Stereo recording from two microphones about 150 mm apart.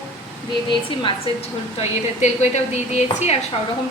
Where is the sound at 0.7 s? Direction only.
35° left (ahead or behind).